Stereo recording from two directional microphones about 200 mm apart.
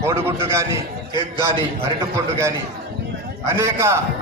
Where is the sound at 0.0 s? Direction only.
15° right (ahead or behind).